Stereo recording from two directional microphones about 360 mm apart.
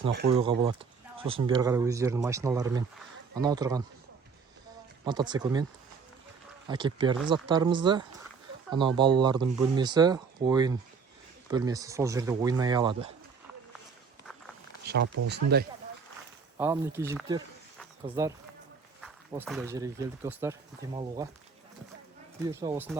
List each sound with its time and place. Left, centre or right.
0.3 s speech: centre
5.0 s speech: centre
6.7 s speech: centre
15.0 s speech: right
15.3 s speech: right
16.6 s speech: centre
17.7 s a sound: centre
19.3 s speech: centre
22.4 s speech: centre